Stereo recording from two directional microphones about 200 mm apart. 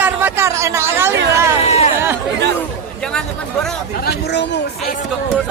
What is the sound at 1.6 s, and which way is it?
Speech, 30° left (ahead or behind).